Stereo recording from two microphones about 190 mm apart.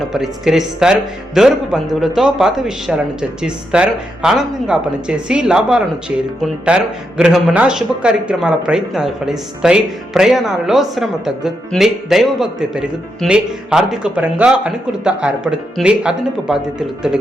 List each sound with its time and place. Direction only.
0.1 s speech: centre (ahead or behind)